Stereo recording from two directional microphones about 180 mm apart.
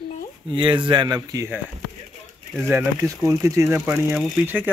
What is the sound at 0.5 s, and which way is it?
Speech, 25° right (ahead or behind).